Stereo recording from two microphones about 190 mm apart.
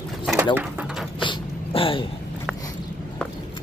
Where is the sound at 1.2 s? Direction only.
25° left (ahead or behind).